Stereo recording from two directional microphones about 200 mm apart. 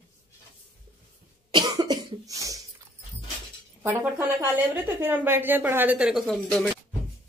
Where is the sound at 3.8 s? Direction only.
10° right (ahead or behind).